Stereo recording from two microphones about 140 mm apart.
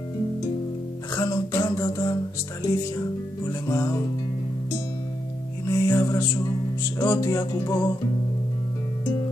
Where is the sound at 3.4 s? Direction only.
20° left (ahead or behind).